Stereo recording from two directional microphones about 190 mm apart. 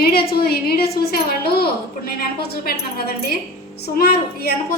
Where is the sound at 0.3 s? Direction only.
55° left (ahead or behind).